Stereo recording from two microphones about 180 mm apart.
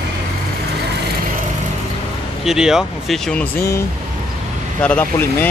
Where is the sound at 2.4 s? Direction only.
5° right (ahead or behind).